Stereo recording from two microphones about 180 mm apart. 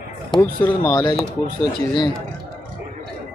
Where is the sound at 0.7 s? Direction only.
15° left (ahead or behind).